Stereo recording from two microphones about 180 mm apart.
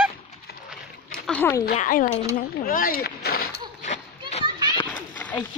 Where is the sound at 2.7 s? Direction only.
50° left (ahead or behind).